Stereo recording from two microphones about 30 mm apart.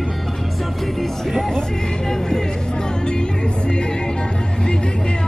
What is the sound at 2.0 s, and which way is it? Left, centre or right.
Speech, centre.